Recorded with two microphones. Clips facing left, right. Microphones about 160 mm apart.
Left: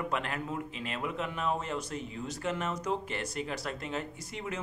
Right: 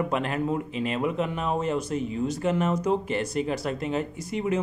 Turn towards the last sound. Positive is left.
turn(degrees=-15)  # may be behind; listen again after turning